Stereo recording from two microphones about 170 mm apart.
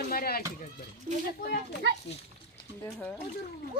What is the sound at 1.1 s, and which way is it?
Speech, 45° right (ahead or behind).